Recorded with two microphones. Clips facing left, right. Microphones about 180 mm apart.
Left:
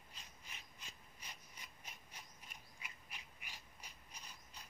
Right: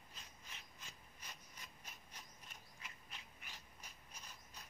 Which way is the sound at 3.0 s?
15° left (ahead or behind).